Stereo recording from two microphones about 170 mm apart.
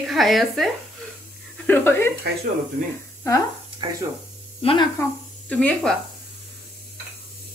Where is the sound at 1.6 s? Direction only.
10° left (ahead or behind).